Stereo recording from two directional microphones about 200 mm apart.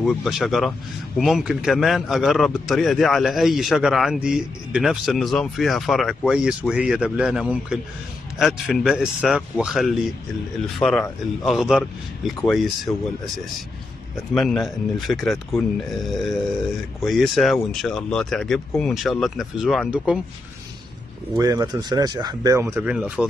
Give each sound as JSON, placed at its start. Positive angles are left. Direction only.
{"t": 0.0, "sound": "speech", "side_deg": 0}
{"t": 14.3, "sound": "speech", "side_deg": 0}
{"t": 21.4, "sound": "speech", "side_deg": -15}